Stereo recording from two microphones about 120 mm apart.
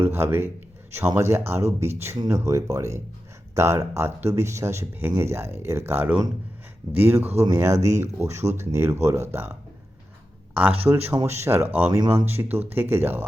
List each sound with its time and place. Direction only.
0.0 s speech: 20° right (ahead or behind)
10.5 s speech: 15° right (ahead or behind)
11.9 s speech: 30° right (ahead or behind)
12.2 s speech: 20° right (ahead or behind)